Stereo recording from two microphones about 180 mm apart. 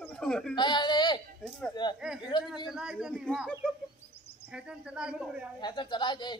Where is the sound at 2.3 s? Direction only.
25° left (ahead or behind).